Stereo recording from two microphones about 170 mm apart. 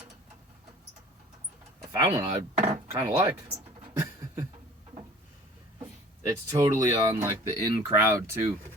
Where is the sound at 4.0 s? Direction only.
20° right (ahead or behind).